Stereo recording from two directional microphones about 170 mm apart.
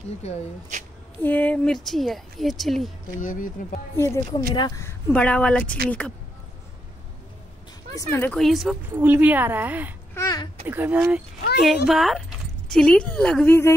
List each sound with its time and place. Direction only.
0.2 s speech: 40° left (ahead or behind)
1.2 s a woman's voice: 10° left (ahead or behind)
3.2 s speech: 50° left (ahead or behind)
3.9 s speech: 15° left (ahead or behind)
7.9 s speech: 15° left (ahead or behind)
8.4 s a woman's voice: centre (ahead or behind)
8.9 s a woman's voice: 10° right (ahead or behind)
10.1 s a sound: 20° left (ahead or behind)
10.7 s a woman's voice: 10° right (ahead or behind); by 13.6 s 5° left (ahead or behind)